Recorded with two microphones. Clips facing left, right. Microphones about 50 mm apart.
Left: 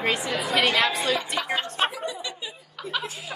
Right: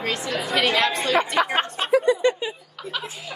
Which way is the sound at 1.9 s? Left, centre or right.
Right.